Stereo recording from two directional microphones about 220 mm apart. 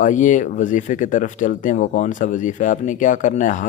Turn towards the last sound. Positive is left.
turn(degrees=35)  # may be behind; listen again after turning